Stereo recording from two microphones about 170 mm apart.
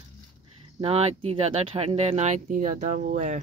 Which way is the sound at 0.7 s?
35° right (ahead or behind).